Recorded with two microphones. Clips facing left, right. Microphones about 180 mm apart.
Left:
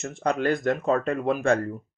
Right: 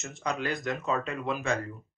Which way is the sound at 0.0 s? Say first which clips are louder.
Left 8 dB; 55° left (ahead or behind).